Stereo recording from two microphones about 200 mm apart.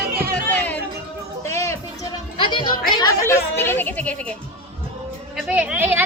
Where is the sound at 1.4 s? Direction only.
15° left (ahead or behind).